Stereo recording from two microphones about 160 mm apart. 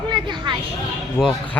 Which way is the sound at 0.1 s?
30° right (ahead or behind).